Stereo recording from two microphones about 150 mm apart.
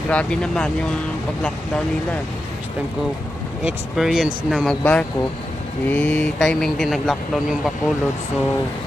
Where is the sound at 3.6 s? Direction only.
Centre (ahead or behind).